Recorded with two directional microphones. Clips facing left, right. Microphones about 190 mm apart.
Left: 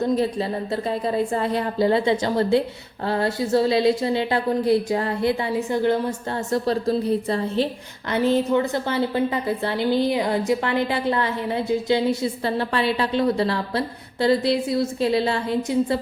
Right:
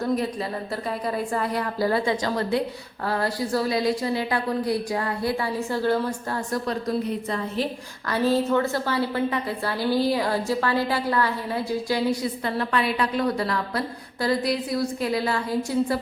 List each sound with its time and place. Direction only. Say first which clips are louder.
0.0 s a woman's voice: left 4 dB; 25° left (ahead or behind)
8.1 s a woman's voice: left 2 dB; 20° left (ahead or behind)